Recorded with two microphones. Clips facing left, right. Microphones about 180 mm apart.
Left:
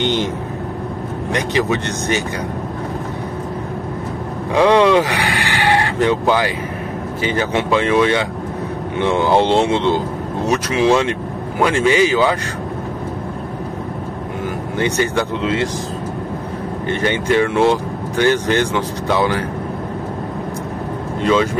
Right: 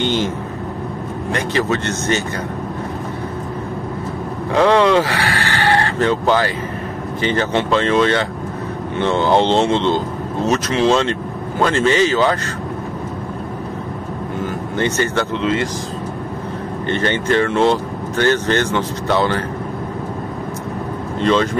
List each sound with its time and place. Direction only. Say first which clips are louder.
0.0 s vehicle: even; 20° left (ahead or behind)
1.3 s speech: left 1 dB; 15° left (ahead or behind)
4.5 s speech: left 1 dB; 15° left (ahead or behind)
14.8 s speech: left 1 dB; 15° left (ahead or behind)
16.8 s speech: even; 10° left (ahead or behind)
21.2 s speech: even; 10° left (ahead or behind)